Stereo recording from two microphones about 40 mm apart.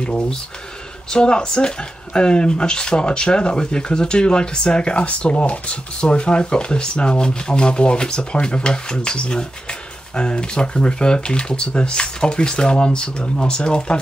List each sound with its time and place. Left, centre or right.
0.0 s speech: left